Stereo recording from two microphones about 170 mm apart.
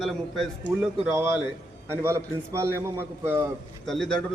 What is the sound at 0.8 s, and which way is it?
A man's voice, 10° right (ahead or behind).